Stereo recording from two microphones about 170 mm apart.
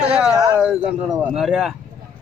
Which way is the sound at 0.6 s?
5° right (ahead or behind).